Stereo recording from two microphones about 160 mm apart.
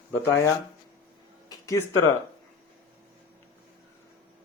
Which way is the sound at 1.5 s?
15° left (ahead or behind).